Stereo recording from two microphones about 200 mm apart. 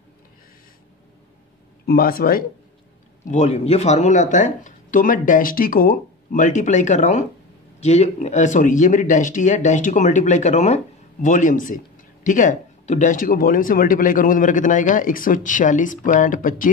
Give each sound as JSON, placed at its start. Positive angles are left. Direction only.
{"t": 1.9, "sound": "speech", "side_deg": 50}
{"t": 3.3, "sound": "speech", "side_deg": 35}